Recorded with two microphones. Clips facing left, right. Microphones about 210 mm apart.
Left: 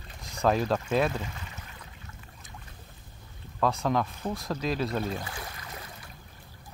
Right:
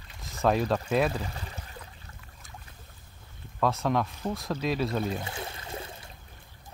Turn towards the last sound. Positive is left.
turn(degrees=-25)  # may be behind; listen again after turning